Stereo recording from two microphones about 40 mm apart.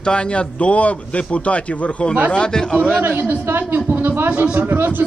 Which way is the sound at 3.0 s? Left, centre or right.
Right.